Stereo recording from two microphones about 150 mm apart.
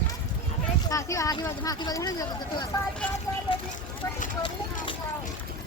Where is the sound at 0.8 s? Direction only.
20° left (ahead or behind).